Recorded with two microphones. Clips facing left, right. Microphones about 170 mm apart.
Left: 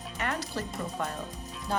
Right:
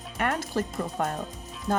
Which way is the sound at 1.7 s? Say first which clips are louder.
Right 5 dB; 50° right (ahead or behind).